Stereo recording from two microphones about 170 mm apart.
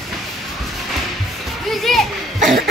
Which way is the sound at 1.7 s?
Centre (ahead or behind).